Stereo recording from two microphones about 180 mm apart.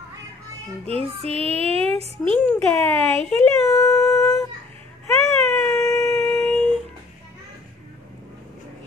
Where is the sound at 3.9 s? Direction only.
Centre (ahead or behind).